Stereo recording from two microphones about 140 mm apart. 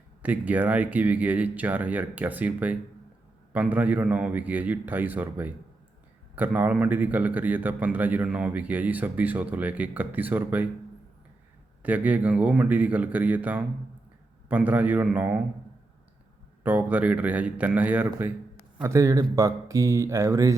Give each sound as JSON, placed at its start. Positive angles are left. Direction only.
{"t": 0.2, "sound": "a man's voice", "side_deg": -10}
{"t": 11.8, "sound": "a man's voice", "side_deg": -10}
{"t": 16.6, "sound": "a man's voice", "side_deg": -10}